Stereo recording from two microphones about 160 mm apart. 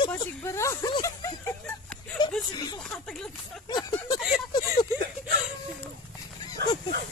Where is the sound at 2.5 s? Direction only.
25° left (ahead or behind).